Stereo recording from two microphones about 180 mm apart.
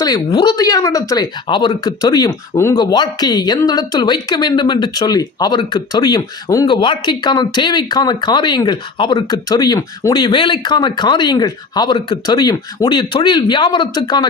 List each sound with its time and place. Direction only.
0.0 s speech: 25° left (ahead or behind)